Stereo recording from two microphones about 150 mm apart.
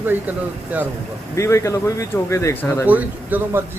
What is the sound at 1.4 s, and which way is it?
Speech, 20° left (ahead or behind).